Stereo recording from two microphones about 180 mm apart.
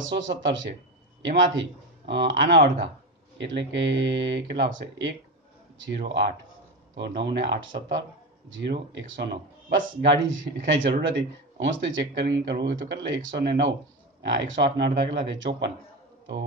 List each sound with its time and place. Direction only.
0.0 s speech: 85° right
3.3 s speech: 85° right
5.8 s speech: 70° right (ahead or behind)
14.2 s speech: 85° right